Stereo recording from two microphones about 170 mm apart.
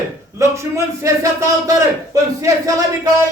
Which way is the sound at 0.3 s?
20° right (ahead or behind).